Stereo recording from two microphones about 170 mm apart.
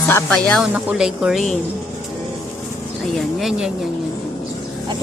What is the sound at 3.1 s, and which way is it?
Speech, centre (ahead or behind).